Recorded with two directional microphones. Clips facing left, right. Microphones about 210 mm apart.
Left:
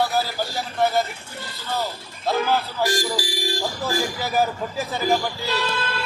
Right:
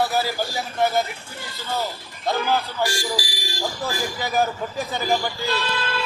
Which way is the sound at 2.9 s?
50° left (ahead or behind).